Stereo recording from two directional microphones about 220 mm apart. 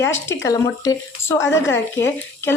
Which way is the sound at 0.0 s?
10° left (ahead or behind).